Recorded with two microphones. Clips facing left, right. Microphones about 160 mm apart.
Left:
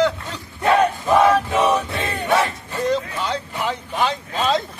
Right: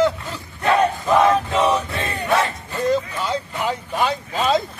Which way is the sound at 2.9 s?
5° right (ahead or behind).